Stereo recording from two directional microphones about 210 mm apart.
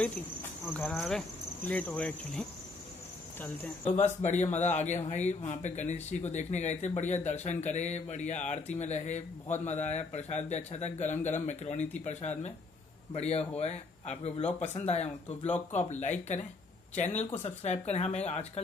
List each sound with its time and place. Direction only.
0.7 s cricket: centre (ahead or behind)
3.8 s speech: 35° left (ahead or behind)